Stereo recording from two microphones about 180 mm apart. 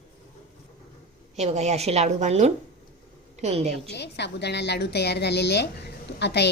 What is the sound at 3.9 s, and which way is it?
A woman's voice, 70° left (ahead or behind).